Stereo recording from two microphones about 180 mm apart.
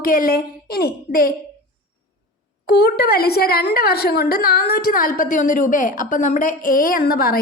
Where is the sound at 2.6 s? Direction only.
65° left (ahead or behind).